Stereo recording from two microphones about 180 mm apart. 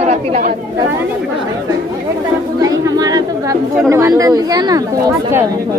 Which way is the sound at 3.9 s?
20° right (ahead or behind).